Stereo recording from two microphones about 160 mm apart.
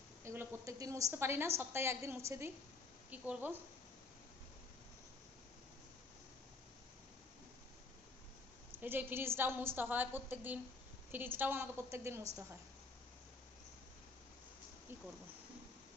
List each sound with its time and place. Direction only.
0.3 s a woman's voice: 20° right (ahead or behind)
8.8 s a woman's voice: 10° right (ahead or behind)